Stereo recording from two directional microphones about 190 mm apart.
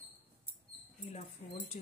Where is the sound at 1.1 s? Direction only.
35° left (ahead or behind).